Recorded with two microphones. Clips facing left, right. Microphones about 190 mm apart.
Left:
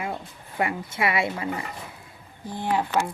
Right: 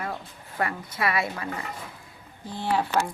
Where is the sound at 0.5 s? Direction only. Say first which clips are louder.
Left 2 dB; 25° left (ahead or behind).